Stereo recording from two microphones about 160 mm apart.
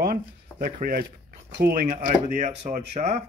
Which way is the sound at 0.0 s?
65° right (ahead or behind).